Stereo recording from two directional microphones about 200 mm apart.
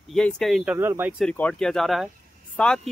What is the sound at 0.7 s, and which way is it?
Speech, 10° right (ahead or behind).